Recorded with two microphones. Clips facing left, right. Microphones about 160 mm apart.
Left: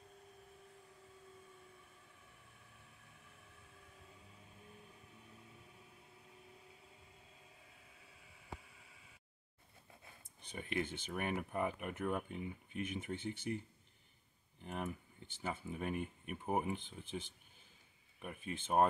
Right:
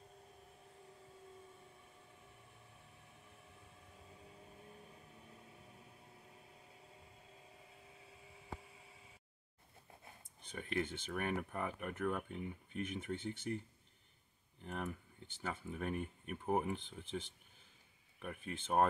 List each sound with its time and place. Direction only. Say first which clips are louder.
10.6 s speech: even; 10° left (ahead or behind)
14.6 s a sound: left 1 dB; 15° left (ahead or behind)
15.4 s speech: left 1 dB; 10° left (ahead or behind)